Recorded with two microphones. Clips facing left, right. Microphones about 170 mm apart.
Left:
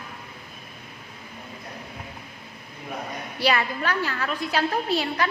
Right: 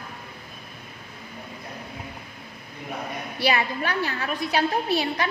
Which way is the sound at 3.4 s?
15° right (ahead or behind).